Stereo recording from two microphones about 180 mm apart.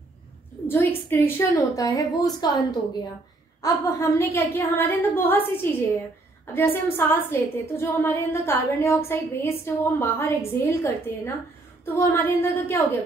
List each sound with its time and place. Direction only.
0.7 s a woman's voice: 10° left (ahead or behind)
3.6 s a woman's voice: 15° left (ahead or behind)